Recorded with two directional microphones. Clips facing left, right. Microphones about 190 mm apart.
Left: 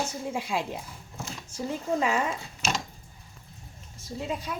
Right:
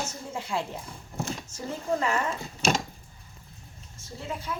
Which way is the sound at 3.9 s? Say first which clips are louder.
Left 4 dB; 15° left (ahead or behind).